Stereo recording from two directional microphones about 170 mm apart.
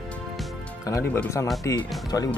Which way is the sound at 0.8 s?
15° left (ahead or behind).